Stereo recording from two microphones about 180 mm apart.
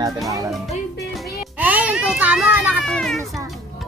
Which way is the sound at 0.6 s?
5° right (ahead or behind).